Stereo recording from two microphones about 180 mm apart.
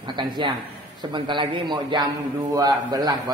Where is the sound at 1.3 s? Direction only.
25° right (ahead or behind).